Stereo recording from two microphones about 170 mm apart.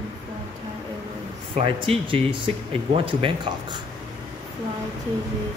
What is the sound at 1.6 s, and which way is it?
Speech, 30° right (ahead or behind).